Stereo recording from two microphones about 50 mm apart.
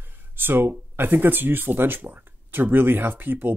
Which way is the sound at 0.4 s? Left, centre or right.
Right.